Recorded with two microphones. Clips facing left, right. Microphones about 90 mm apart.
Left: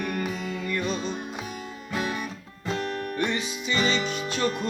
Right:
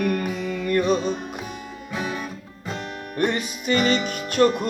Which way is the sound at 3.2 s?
50° right (ahead or behind).